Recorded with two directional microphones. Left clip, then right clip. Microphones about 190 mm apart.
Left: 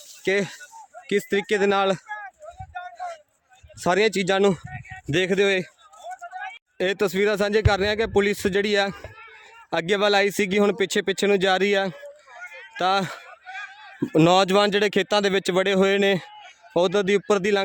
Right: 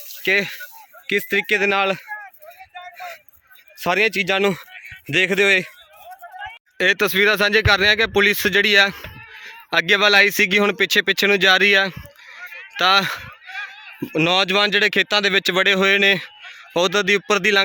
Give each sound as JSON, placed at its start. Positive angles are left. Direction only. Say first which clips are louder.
{"t": 0.2, "sound": "speech", "louder": "right 5 dB", "side_deg": 15}
{"t": 2.7, "sound": "a sound", "louder": "left 1 dB", "side_deg": 15}
{"t": 3.8, "sound": "a man's voice", "louder": "right 2 dB", "side_deg": 20}
{"t": 6.7, "sound": "speech", "louder": "right 6 dB", "side_deg": 10}
{"t": 14.1, "sound": "speech", "louder": "even", "side_deg": 25}